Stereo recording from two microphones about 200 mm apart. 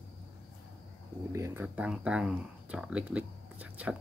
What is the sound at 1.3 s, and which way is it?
Speech, 15° right (ahead or behind).